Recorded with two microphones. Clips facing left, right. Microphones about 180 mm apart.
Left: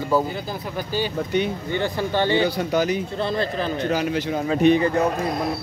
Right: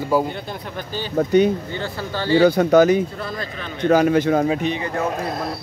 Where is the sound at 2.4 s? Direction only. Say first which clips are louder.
Right 8 dB; 50° right (ahead or behind).